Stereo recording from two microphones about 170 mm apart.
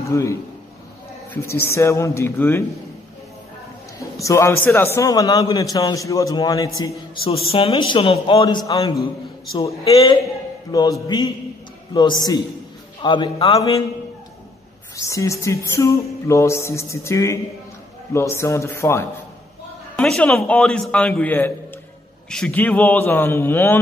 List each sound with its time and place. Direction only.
0.0 s a man's voice: 15° left (ahead or behind)
1.3 s music: 15° left (ahead or behind)
4.2 s a man's voice: 15° left (ahead or behind)
7.2 s a man's voice: 35° left (ahead or behind)
15.0 s music: 20° left (ahead or behind)
20.0 s music: 5° left (ahead or behind)